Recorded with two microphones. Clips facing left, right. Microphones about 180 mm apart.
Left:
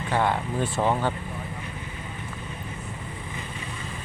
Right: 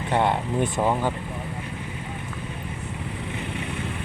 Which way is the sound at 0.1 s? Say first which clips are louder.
Right 2 dB; 25° right (ahead or behind).